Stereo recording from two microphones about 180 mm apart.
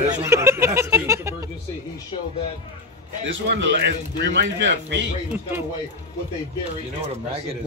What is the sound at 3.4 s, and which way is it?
A man's voice, 85° right.